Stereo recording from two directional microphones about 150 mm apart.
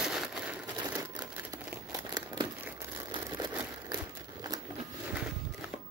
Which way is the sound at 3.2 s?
25° right (ahead or behind).